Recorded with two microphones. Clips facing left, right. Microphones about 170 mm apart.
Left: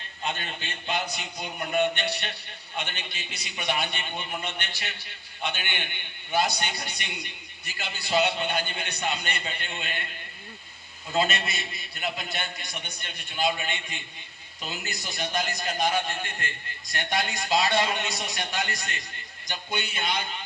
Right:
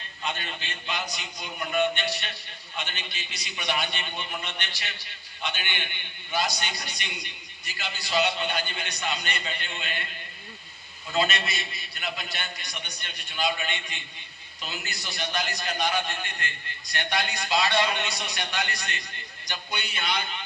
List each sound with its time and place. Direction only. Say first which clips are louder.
0.2 s a man's voice: left 1 dB; 45° left (ahead or behind)
11.1 s a man's voice: even; 45° left (ahead or behind)